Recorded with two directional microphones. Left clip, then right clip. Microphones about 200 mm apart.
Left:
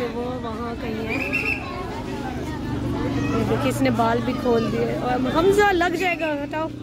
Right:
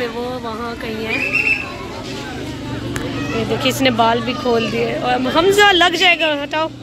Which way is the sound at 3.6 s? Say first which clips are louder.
Right 9 dB; 5° left (ahead or behind).